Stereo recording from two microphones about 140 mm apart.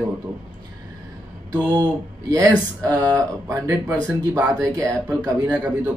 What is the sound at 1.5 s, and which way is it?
A man's voice, 30° right (ahead or behind).